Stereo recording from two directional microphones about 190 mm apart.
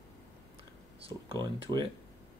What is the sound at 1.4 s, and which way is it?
Speech, 20° right (ahead or behind).